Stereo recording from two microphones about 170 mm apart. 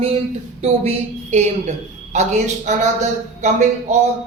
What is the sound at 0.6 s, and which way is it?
A woman's voice, 40° right (ahead or behind).